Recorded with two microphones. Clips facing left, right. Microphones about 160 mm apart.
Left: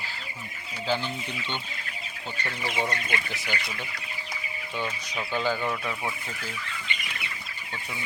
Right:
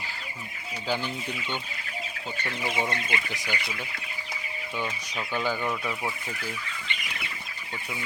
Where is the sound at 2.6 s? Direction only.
15° right (ahead or behind).